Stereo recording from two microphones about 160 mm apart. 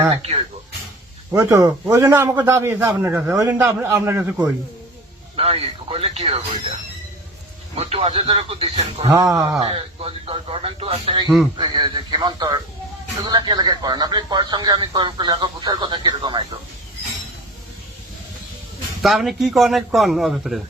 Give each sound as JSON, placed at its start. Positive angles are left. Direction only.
{"t": 0.1, "sound": "speech", "side_deg": -40}
{"t": 1.3, "sound": "a man's voice", "side_deg": -20}
{"t": 5.4, "sound": "speech", "side_deg": -35}
{"t": 7.8, "sound": "speech", "side_deg": -40}
{"t": 9.0, "sound": "speech", "side_deg": -20}
{"t": 9.6, "sound": "speech", "side_deg": -35}
{"t": 19.0, "sound": "a man's voice", "side_deg": 0}